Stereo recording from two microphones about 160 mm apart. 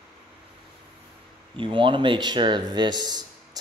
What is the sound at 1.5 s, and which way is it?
Speech, 30° right (ahead or behind).